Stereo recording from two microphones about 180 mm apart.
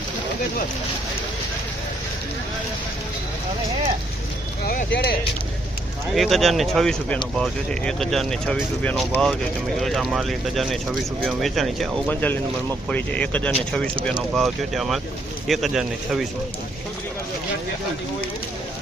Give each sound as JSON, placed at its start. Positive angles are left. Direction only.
{"t": 4.6, "sound": "speech", "side_deg": 50}
{"t": 4.9, "sound": "speech", "side_deg": 65}
{"t": 6.1, "sound": "speech", "side_deg": 0}